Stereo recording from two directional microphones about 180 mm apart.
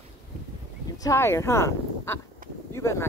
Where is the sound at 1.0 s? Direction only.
15° left (ahead or behind).